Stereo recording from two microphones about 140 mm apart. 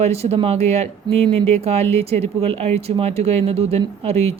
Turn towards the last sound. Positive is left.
turn(degrees=-50)  # may be behind; listen again after turning